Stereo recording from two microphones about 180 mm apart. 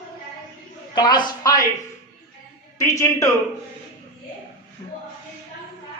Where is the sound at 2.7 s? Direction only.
15° left (ahead or behind).